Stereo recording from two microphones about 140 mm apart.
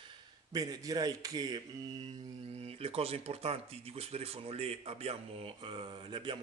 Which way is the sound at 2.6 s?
45° right (ahead or behind).